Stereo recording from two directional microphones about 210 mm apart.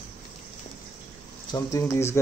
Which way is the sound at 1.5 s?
15° left (ahead or behind).